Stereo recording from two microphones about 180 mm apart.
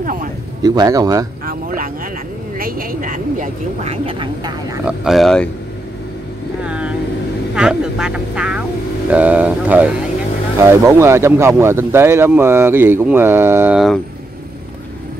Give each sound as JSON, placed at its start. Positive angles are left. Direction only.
{"t": 0.0, "sound": "speech", "side_deg": -50}
{"t": 0.6, "sound": "speech", "side_deg": -20}
{"t": 1.4, "sound": "a sound", "side_deg": -50}
{"t": 2.5, "sound": "vehicle", "side_deg": -55}
{"t": 4.8, "sound": "speech", "side_deg": 0}
{"t": 6.6, "sound": "vehicle", "side_deg": -5}
{"t": 7.5, "sound": "speech", "side_deg": -5}